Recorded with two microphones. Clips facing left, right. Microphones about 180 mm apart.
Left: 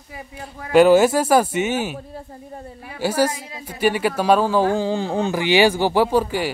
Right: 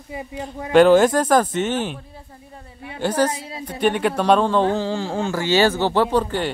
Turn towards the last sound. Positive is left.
turn(degrees=10)  # may be behind; listen again after turning